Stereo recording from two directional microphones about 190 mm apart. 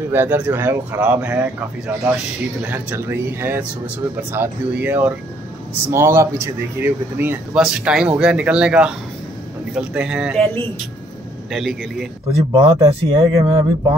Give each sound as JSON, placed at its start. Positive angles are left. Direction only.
{"t": 0.1, "sound": "speech", "side_deg": -10}
{"t": 2.6, "sound": "speech", "side_deg": -10}
{"t": 11.5, "sound": "speech", "side_deg": 0}
{"t": 12.5, "sound": "speech", "side_deg": -25}